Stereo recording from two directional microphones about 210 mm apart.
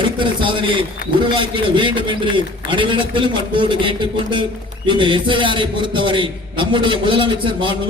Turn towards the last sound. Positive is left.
turn(degrees=-25)  # may be behind; listen again after turning